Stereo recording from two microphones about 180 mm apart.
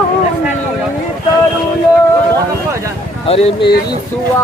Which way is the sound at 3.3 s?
30° left (ahead or behind).